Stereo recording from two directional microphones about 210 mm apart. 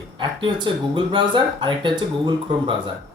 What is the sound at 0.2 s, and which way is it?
Speech, 20° right (ahead or behind).